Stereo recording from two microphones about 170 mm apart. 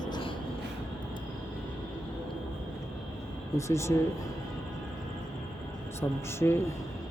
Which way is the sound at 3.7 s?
15° left (ahead or behind).